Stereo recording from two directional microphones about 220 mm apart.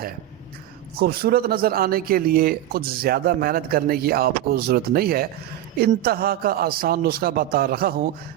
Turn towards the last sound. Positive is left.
turn(degrees=-45)  # may be behind; listen again after turning